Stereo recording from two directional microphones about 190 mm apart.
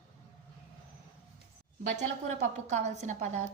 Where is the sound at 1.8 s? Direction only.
40° right (ahead or behind).